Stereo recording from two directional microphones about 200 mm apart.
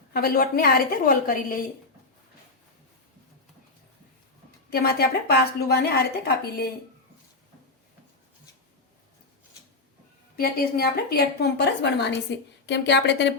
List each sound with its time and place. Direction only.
0.1 s a woman's voice: 45° left (ahead or behind)
4.7 s a woman's voice: 50° left (ahead or behind)
10.3 s a woman's voice: 50° left (ahead or behind)